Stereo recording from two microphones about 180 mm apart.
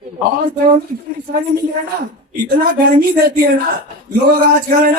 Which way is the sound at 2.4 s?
55° right (ahead or behind).